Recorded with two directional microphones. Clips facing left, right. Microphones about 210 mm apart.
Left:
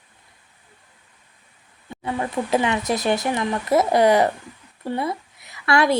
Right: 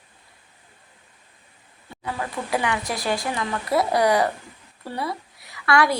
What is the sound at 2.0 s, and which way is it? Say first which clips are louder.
A woman's voice: left 5 dB; 25° left (ahead or behind).